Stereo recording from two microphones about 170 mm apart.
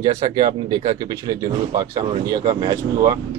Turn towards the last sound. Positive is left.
turn(degrees=-20)  # may be behind; listen again after turning